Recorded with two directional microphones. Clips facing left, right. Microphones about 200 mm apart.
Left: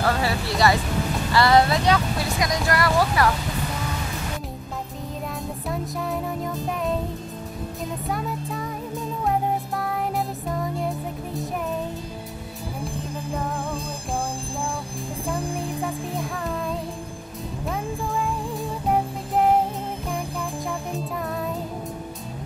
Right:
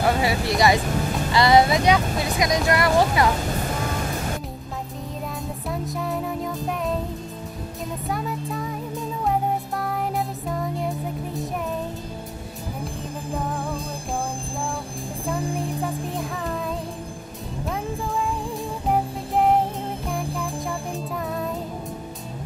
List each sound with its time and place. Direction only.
0.0 s speech: 15° right (ahead or behind)
5.7 s music: centre (ahead or behind)
8.1 s music: centre (ahead or behind)
15.2 s music: centre (ahead or behind)
18.9 s music: centre (ahead or behind)